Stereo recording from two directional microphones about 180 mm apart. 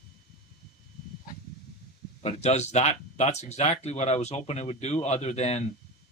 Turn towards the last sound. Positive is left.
turn(degrees=35)  # may be behind; listen again after turning